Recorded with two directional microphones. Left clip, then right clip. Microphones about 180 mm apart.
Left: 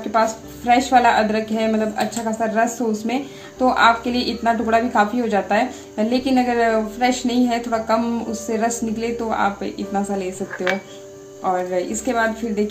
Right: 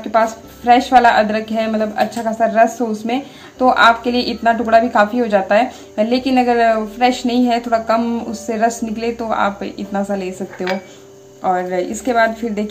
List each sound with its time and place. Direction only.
0.1 s a woman's voice: 20° right (ahead or behind)
11.4 s a woman's voice: 25° right (ahead or behind)